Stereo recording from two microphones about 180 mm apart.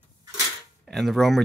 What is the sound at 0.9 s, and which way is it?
Speech, centre (ahead or behind).